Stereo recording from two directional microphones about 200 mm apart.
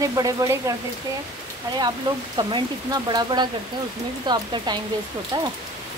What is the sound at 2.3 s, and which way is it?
Speech, 20° right (ahead or behind).